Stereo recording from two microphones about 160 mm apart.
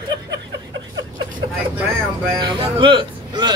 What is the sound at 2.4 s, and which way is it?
Speech, 30° right (ahead or behind).